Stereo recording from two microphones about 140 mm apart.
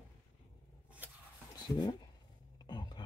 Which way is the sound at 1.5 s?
30° left (ahead or behind).